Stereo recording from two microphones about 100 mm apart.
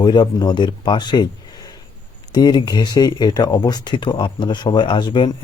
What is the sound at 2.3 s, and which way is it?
Speech, 45° left (ahead or behind).